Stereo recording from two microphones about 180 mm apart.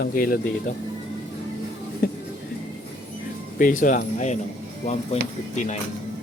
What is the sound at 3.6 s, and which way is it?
Speech, 50° left (ahead or behind).